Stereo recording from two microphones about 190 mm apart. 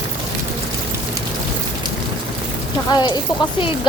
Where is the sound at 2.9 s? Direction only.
20° left (ahead or behind).